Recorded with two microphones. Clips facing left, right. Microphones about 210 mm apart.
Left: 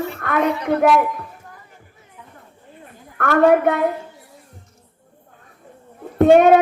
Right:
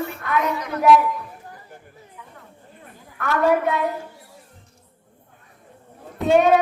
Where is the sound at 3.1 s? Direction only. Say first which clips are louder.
Left 5 dB; 55° left (ahead or behind).